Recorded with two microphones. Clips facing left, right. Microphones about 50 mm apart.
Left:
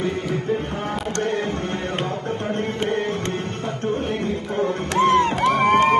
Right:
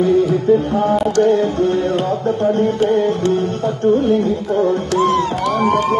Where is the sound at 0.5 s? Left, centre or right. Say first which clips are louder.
Right 11 dB; left.